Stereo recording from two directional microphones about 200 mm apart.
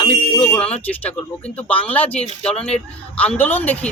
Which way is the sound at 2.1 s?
30° left (ahead or behind).